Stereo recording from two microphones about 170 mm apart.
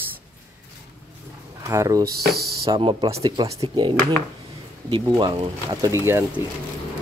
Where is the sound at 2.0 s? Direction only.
65° right (ahead or behind).